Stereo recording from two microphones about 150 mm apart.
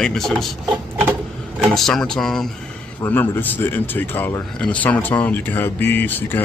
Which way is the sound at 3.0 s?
15° left (ahead or behind).